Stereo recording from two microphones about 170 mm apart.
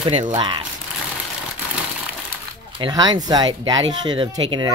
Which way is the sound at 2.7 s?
25° right (ahead or behind).